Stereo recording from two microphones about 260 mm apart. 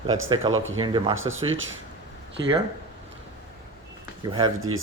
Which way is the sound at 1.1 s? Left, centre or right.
Right.